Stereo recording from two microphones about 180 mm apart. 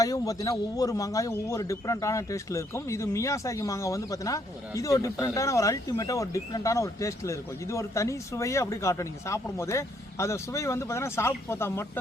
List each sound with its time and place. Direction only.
0.0 s speech: 20° left (ahead or behind)